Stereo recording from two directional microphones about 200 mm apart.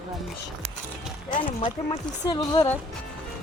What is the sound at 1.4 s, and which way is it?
A woman's voice, 25° left (ahead or behind).